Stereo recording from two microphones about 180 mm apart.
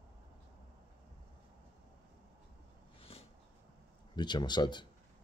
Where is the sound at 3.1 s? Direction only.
30° left (ahead or behind).